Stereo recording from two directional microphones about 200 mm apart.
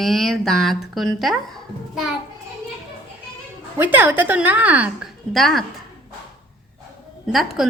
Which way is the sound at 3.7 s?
10° right (ahead or behind).